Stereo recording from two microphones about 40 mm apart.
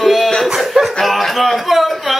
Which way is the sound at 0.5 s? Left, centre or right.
Centre.